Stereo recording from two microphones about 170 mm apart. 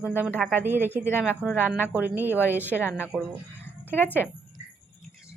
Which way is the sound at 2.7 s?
Centre (ahead or behind).